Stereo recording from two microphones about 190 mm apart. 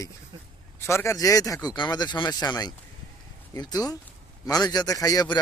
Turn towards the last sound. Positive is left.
turn(degrees=20)  # may be behind; listen again after turning